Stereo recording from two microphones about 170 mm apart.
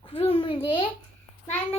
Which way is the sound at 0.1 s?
35° left (ahead or behind).